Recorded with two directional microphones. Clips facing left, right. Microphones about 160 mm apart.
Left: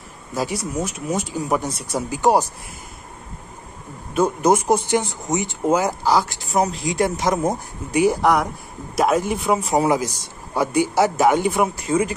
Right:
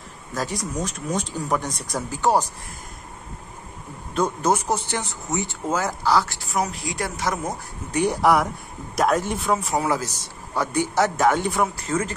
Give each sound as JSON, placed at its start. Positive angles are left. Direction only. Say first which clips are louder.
{"t": 0.3, "sound": "a man's voice", "louder": "left 3 dB", "side_deg": 10}
{"t": 4.1, "sound": "a man's voice", "louder": "left 4 dB", "side_deg": 10}
{"t": 8.0, "sound": "speech", "louder": "left 2 dB", "side_deg": 0}
{"t": 9.5, "sound": "a man's voice", "louder": "left 5 dB", "side_deg": 20}